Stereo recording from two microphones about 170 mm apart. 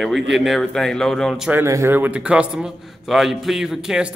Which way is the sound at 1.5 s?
15° right (ahead or behind).